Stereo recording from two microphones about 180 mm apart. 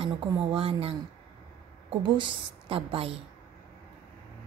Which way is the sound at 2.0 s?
30° right (ahead or behind).